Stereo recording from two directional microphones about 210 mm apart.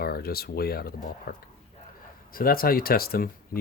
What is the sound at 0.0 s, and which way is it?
Speech, 45° left (ahead or behind).